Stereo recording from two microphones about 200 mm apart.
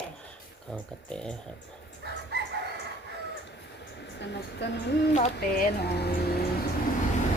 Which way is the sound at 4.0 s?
60° left (ahead or behind).